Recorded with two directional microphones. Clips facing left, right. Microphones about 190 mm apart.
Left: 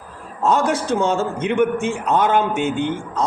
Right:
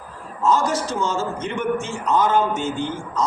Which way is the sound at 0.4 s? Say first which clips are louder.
Left 2 dB; 60° left (ahead or behind).